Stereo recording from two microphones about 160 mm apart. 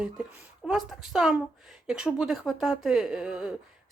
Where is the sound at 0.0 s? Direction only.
5° right (ahead or behind).